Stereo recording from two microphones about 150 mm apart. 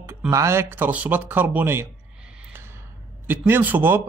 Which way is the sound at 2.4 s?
15° right (ahead or behind).